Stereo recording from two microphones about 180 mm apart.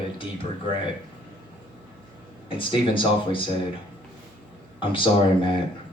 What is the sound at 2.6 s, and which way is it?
Speech, 30° left (ahead or behind).